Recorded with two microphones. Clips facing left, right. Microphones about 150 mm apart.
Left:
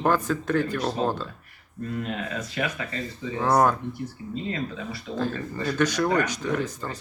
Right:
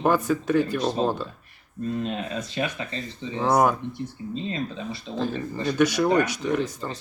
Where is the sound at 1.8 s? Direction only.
25° right (ahead or behind).